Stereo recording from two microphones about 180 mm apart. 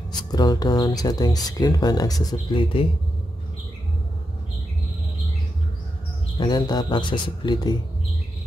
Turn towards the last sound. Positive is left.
turn(degrees=25)  # may be behind; listen again after turning